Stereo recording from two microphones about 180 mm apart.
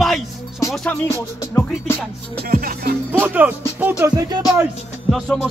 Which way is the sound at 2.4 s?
55° right (ahead or behind).